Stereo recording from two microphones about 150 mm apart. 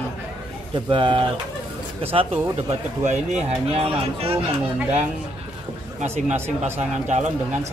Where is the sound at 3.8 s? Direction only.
40° right (ahead or behind).